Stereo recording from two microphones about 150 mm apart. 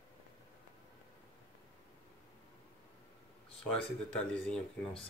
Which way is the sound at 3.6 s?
10° left (ahead or behind).